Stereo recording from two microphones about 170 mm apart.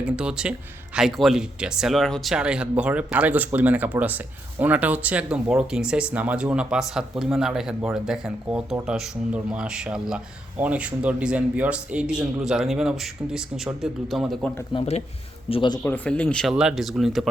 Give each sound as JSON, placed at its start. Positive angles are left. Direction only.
{"t": 0.0, "sound": "a man's voice", "side_deg": -5}
{"t": 14.7, "sound": "speech", "side_deg": 35}
{"t": 15.8, "sound": "speech", "side_deg": 10}